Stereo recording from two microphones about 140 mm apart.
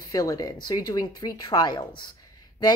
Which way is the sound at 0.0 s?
25° left (ahead or behind).